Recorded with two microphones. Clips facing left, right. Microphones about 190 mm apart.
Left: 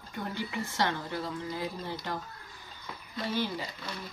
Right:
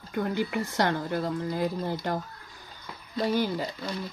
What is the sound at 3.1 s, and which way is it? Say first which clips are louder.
Speech: right 6 dB; 40° right (ahead or behind).